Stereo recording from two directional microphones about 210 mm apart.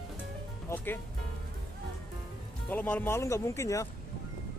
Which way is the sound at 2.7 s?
10° left (ahead or behind).